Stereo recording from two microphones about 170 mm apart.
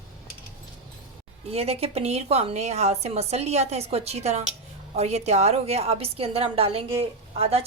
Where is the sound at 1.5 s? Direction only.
35° right (ahead or behind).